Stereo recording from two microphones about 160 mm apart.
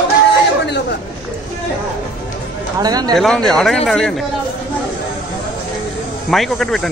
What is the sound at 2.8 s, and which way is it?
Speech, 25° right (ahead or behind).